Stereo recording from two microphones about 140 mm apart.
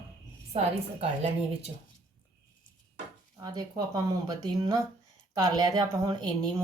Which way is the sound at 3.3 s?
25° right (ahead or behind).